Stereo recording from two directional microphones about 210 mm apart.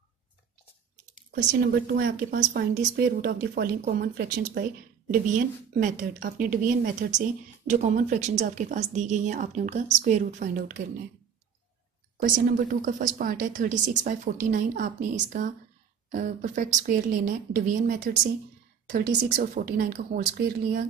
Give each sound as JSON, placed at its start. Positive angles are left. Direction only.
{"t": 1.3, "sound": "speech", "side_deg": -45}
{"t": 12.8, "sound": "speech", "side_deg": -40}